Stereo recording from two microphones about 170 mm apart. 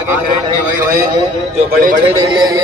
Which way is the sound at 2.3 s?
25° right (ahead or behind).